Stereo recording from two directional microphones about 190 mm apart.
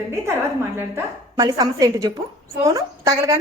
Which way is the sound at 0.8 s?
15° right (ahead or behind).